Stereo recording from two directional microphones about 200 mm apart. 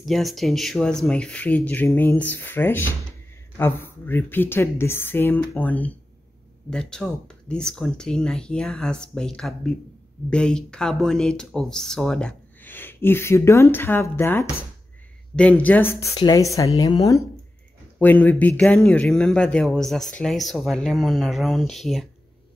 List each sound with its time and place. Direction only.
0.0 s a woman's voice: centre (ahead or behind); by 17.2 s 20° left (ahead or behind)
17.9 s speech: 10° left (ahead or behind)